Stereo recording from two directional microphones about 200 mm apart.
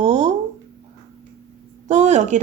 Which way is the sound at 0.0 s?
35° right (ahead or behind).